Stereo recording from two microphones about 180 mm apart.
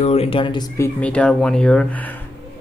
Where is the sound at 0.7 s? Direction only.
10° left (ahead or behind).